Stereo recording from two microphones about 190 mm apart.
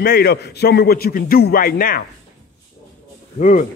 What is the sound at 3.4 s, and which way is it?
Speech, 45° left (ahead or behind).